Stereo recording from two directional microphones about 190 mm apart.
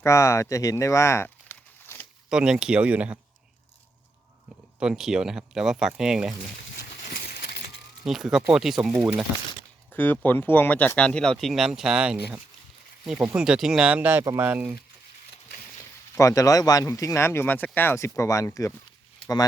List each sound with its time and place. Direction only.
0.0 s speech: 15° left (ahead or behind)
2.3 s speech: 5° right (ahead or behind)
4.8 s speech: 5° right (ahead or behind)
7.1 s coin: 55° left (ahead or behind)
8.0 s speech: centre (ahead or behind)
9.9 s speech: 10° left (ahead or behind); by 14.8 s 10° right (ahead or behind)
16.1 s speech: 15° left (ahead or behind)